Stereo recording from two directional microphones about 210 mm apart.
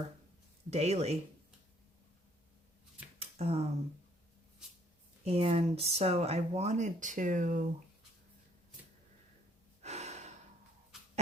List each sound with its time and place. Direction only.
0.7 s speech: 30° right (ahead or behind)
3.2 s a sound: 30° right (ahead or behind)
5.2 s speech: 30° right (ahead or behind)
9.8 s gasp: 30° right (ahead or behind)